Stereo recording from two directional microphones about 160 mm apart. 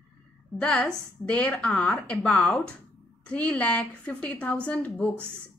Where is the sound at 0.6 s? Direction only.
5° left (ahead or behind).